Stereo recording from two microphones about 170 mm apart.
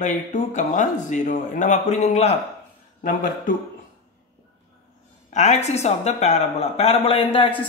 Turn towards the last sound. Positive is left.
turn(degrees=35)  # may be behind; listen again after turning